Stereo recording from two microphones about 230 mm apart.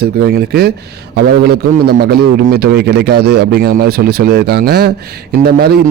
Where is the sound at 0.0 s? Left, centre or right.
Right.